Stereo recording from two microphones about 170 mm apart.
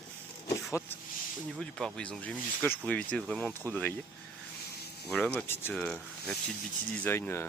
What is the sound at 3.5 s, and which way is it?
Speech, 15° right (ahead or behind).